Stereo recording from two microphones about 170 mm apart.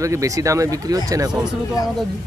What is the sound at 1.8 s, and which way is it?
Speech, 20° left (ahead or behind).